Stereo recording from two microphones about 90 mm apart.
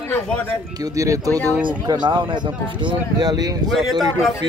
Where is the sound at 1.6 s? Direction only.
55° right (ahead or behind).